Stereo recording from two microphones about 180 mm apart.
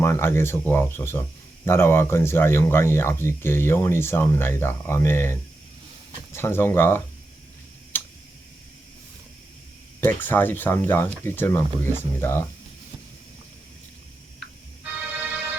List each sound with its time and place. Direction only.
0.0 s speech: 15° left (ahead or behind)
7.9 s tick: 10° left (ahead or behind)
10.0 s speech: 10° left (ahead or behind)
14.9 s music: 10° right (ahead or behind)